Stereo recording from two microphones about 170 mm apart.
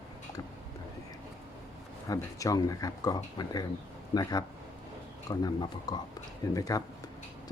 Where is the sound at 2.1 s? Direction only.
20° left (ahead or behind).